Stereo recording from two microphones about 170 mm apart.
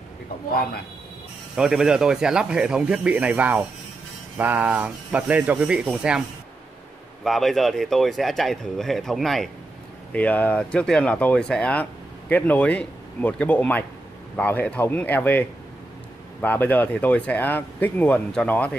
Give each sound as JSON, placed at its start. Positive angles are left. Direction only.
{"t": 1.6, "sound": "speech", "side_deg": -5}
{"t": 7.2, "sound": "speech", "side_deg": 0}